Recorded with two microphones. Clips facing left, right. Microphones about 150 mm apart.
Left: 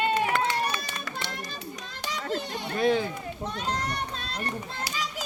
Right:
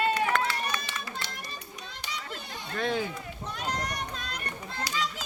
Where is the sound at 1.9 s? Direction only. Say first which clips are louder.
Left 5 dB; 90° left.